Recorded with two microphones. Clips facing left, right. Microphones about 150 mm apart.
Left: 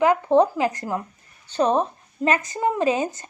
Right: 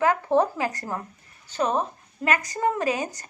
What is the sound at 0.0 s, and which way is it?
Speech, 15° left (ahead or behind).